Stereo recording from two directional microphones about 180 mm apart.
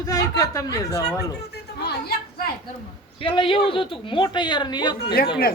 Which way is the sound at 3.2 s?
30° left (ahead or behind).